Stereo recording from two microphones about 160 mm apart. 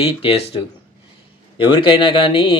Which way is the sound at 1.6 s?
30° left (ahead or behind).